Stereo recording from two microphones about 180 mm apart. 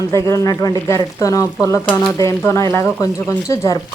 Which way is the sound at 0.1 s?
15° left (ahead or behind).